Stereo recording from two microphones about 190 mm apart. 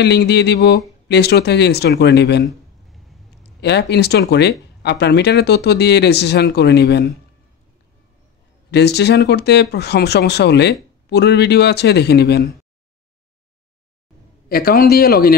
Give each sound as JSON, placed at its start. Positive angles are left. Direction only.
{"t": 0.0, "sound": "speech", "side_deg": 60}
{"t": 2.4, "sound": "a sound", "side_deg": 0}
{"t": 3.6, "sound": "speech", "side_deg": 60}
{"t": 8.6, "sound": "speech", "side_deg": 60}
{"t": 14.5, "sound": "speech", "side_deg": 50}